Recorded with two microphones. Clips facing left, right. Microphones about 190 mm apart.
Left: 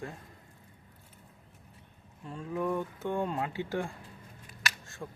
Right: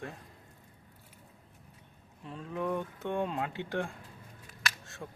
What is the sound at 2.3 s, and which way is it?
Speech, centre (ahead or behind).